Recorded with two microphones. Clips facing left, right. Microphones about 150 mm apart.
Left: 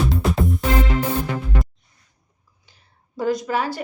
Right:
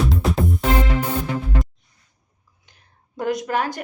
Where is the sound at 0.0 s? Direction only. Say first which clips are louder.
Even; centre (ahead or behind).